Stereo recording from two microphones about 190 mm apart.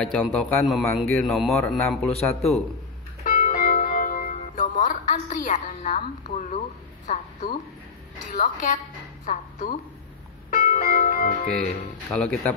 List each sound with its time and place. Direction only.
0.0 s a man's voice: 5° left (ahead or behind)
3.3 s music: 45° left (ahead or behind)
7.1 s a woman's voice: 40° left (ahead or behind)
10.5 s music: 40° left (ahead or behind)
12.1 s a man's voice: 5° left (ahead or behind)